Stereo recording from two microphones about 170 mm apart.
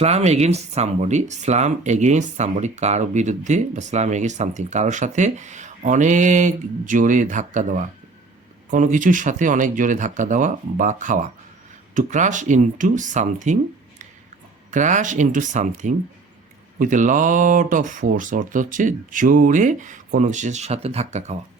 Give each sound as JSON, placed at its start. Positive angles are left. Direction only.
{"t": 0.0, "sound": "speech", "side_deg": -40}
{"t": 14.7, "sound": "speech", "side_deg": -45}